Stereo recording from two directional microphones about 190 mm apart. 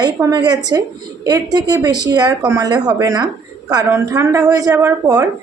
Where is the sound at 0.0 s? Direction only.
20° right (ahead or behind).